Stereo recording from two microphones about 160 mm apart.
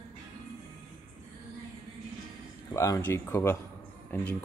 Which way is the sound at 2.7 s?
20° left (ahead or behind).